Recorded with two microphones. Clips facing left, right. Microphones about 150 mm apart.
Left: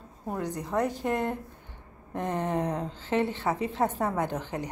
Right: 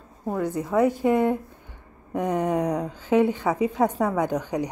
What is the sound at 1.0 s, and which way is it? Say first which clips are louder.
Speech: right 8 dB; 90° right.